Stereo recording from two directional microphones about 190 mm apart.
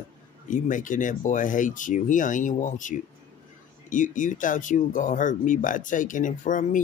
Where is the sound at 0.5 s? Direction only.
45° left (ahead or behind).